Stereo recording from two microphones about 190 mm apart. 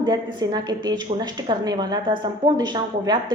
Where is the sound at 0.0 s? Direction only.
20° right (ahead or behind).